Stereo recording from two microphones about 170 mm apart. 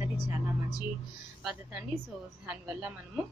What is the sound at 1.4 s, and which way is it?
A woman's voice, 5° right (ahead or behind).